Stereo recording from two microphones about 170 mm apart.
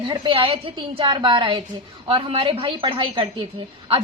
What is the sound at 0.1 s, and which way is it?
A woman's voice, 30° right (ahead or behind).